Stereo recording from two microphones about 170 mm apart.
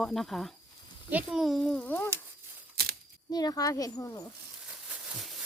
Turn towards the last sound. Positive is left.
turn(degrees=20)  # may be behind; listen again after turning